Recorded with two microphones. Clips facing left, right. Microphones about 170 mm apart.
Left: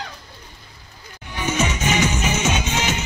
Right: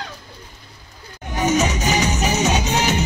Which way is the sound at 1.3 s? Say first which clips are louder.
Right 4 dB; 40° right (ahead or behind).